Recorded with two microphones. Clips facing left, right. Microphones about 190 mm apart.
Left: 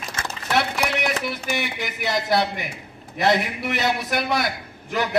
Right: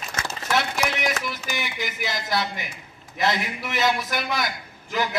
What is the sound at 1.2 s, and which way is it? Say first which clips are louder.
A man's voice: left 4 dB; 60° left (ahead or behind).